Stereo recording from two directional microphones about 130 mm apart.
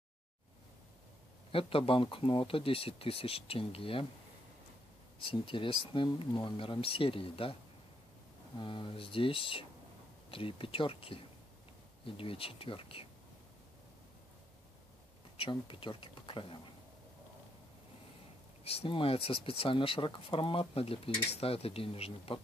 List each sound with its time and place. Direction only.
1.5 s speech: 45° left (ahead or behind)
5.2 s speech: 40° left (ahead or behind)
8.5 s speech: 40° left (ahead or behind)
15.3 s speech: 45° left (ahead or behind)
18.6 s speech: 50° left (ahead or behind)